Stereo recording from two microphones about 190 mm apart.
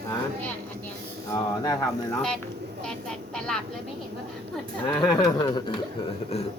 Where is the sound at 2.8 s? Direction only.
5° left (ahead or behind).